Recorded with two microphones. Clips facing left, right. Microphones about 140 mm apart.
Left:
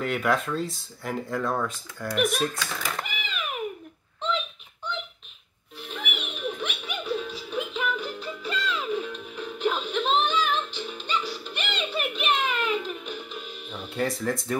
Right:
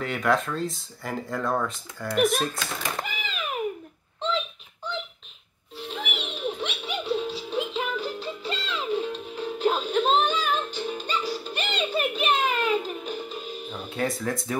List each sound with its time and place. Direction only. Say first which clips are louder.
0.0 s speech: right 1 dB; centre (ahead or behind)
2.6 s cat: right 1 dB; 25° right (ahead or behind)
5.8 s music: right 2 dB; 30° right (ahead or behind)
13.7 s music: left 1 dB; centre (ahead or behind)